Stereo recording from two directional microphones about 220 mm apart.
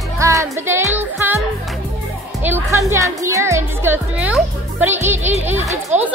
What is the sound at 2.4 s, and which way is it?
A woman's voice, 10° right (ahead or behind).